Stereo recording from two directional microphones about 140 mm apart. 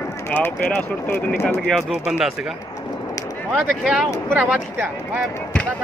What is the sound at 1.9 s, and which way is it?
Speech, 5° right (ahead or behind).